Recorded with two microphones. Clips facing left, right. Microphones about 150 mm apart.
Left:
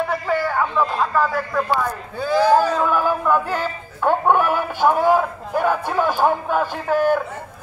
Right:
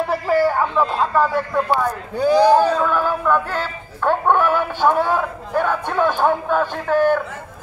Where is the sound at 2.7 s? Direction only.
10° left (ahead or behind).